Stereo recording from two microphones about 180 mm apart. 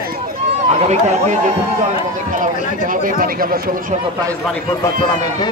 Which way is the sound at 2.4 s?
50° right (ahead or behind).